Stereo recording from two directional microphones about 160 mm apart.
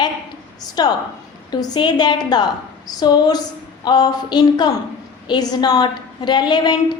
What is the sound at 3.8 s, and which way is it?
A woman's voice, 25° left (ahead or behind).